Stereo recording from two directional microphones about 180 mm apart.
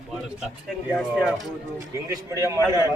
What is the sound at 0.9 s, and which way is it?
Speech, centre (ahead or behind).